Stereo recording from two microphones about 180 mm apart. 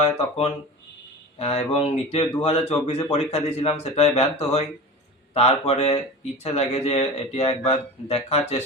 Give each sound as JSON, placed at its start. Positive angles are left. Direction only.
{"t": 0.0, "sound": "speech", "side_deg": 35}